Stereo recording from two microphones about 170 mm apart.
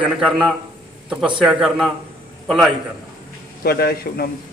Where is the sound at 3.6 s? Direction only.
60° left (ahead or behind).